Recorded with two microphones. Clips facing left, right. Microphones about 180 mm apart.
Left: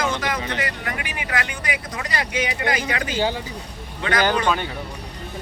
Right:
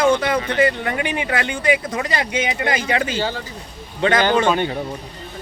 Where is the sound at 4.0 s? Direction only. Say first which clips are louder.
Right 5 dB; 25° right (ahead or behind).